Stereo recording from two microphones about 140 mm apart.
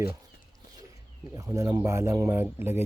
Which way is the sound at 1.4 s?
25° right (ahead or behind).